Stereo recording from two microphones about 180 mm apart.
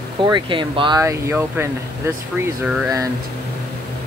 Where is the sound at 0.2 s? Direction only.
25° right (ahead or behind); by 2.9 s 5° right (ahead or behind).